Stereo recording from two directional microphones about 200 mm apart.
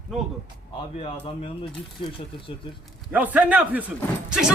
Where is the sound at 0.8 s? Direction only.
30° left (ahead or behind).